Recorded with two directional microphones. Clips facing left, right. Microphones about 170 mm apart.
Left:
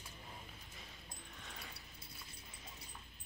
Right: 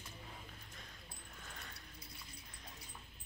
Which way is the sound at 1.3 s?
5° left (ahead or behind).